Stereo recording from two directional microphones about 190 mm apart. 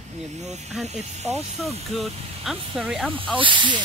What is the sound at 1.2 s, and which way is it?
Speech, 35° right (ahead or behind).